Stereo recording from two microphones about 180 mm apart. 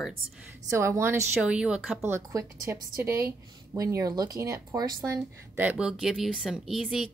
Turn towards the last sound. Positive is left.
turn(degrees=0)  # may be behind; listen again after turning